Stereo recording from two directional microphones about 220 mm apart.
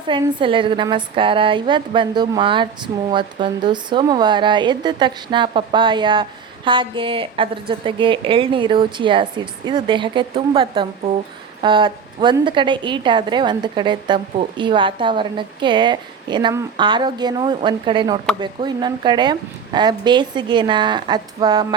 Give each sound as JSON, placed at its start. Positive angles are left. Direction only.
{"t": 0.1, "sound": "a woman's voice", "side_deg": -20}